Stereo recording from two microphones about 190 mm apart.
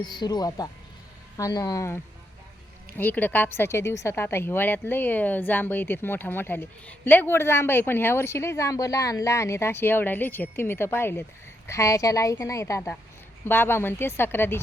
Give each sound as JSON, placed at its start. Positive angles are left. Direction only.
{"t": 0.0, "sound": "speech", "side_deg": 20}
{"t": 3.0, "sound": "speech", "side_deg": 10}